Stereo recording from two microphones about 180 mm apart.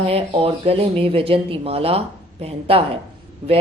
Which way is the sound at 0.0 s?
35° right (ahead or behind).